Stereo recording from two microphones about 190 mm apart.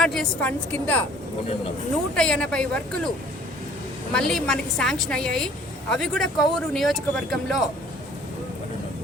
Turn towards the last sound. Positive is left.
turn(degrees=0)  # may be behind; listen again after turning